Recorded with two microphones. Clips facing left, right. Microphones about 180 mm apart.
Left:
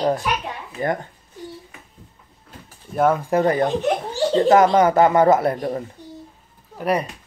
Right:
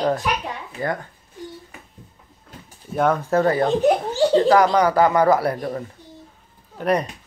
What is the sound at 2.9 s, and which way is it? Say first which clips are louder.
A man's voice: left 1 dB; 5° left (ahead or behind).